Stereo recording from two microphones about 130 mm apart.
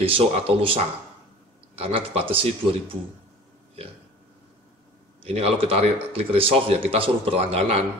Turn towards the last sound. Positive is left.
turn(degrees=-50)  # may be behind; listen again after turning